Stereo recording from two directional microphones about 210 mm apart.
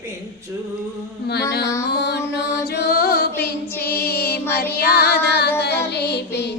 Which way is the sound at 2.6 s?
50° left (ahead or behind).